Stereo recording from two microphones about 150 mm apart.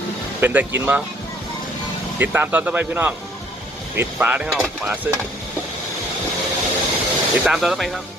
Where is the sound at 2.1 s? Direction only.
10° right (ahead or behind).